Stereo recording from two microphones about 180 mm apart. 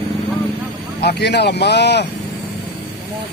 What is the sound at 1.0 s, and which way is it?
Speech, 70° left (ahead or behind).